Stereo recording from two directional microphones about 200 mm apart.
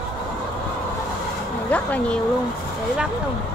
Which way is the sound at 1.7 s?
5° left (ahead or behind).